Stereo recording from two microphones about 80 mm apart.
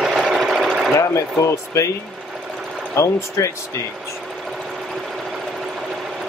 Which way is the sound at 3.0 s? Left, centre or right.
Left.